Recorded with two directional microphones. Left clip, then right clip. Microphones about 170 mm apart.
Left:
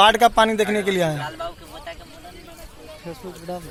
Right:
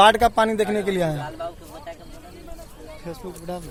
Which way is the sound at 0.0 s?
30° left (ahead or behind).